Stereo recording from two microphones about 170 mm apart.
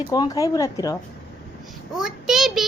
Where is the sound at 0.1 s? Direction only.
20° left (ahead or behind).